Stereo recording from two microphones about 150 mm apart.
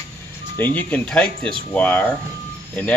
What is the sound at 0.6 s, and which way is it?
Speech, 10° left (ahead or behind).